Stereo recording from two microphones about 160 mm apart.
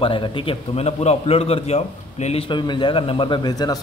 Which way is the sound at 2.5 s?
30° left (ahead or behind).